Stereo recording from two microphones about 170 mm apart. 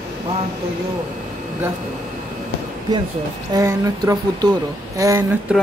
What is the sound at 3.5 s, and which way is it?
Speech, 20° right (ahead or behind).